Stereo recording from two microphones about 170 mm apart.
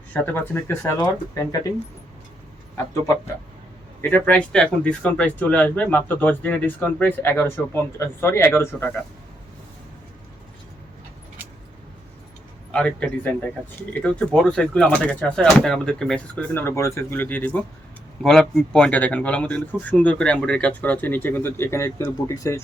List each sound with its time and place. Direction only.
0.1 s speech: 10° left (ahead or behind)
4.0 s speech: 10° left (ahead or behind)
12.7 s speech: 5° left (ahead or behind)